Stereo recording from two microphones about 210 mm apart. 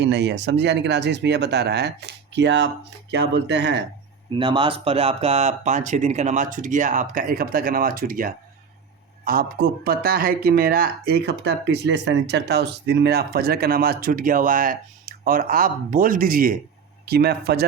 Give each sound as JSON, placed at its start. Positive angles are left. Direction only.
{"t": 0.0, "sound": "speech", "side_deg": -55}
{"t": 4.3, "sound": "a man's voice", "side_deg": -25}